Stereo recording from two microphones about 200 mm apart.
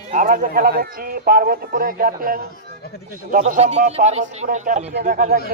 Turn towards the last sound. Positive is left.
turn(degrees=-45)  # may be behind; listen again after turning